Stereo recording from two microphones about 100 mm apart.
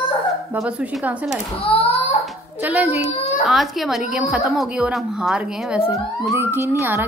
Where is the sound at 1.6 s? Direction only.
80° left.